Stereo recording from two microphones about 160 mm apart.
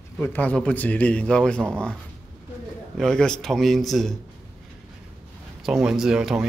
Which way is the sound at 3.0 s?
5° left (ahead or behind).